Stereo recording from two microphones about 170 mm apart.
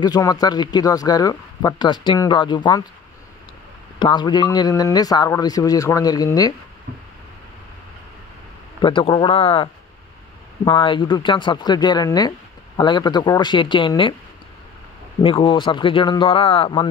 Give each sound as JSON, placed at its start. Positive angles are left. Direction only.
{"t": 0.0, "sound": "speech", "side_deg": 25}
{"t": 4.0, "sound": "speech", "side_deg": 25}
{"t": 8.8, "sound": "speech", "side_deg": 30}
{"t": 15.2, "sound": "speech", "side_deg": 30}